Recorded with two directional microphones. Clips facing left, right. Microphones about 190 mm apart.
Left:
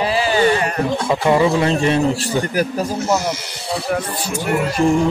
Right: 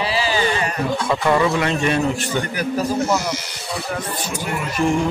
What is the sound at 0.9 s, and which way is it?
A man's voice, 25° left (ahead or behind).